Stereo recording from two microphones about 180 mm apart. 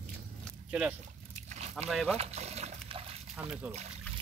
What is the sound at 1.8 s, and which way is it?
Speech, centre (ahead or behind).